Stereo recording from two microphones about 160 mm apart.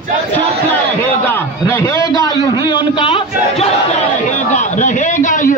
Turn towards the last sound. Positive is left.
turn(degrees=55)  # may be behind; listen again after turning